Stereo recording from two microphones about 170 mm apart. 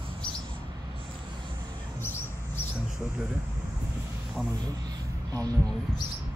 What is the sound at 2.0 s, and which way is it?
Mouse, 15° left (ahead or behind).